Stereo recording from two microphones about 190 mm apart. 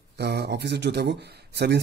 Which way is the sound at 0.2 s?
60° right (ahead or behind).